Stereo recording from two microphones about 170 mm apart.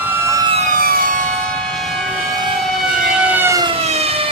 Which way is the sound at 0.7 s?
55° right (ahead or behind).